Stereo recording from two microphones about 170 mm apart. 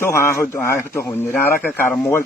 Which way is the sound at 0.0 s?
15° left (ahead or behind).